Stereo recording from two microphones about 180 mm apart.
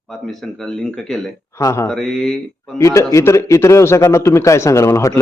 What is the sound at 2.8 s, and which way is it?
A man's voice, 15° left (ahead or behind).